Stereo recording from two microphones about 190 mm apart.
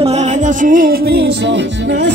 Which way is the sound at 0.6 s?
45° right (ahead or behind).